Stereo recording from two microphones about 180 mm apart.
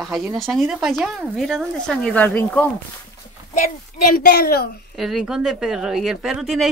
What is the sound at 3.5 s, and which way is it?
Speech, 55° left (ahead or behind).